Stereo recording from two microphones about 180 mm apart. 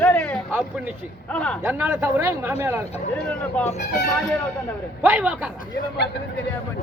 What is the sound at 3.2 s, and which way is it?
Speech, 5° left (ahead or behind).